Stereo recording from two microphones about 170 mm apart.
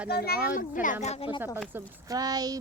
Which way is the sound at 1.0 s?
35° left (ahead or behind).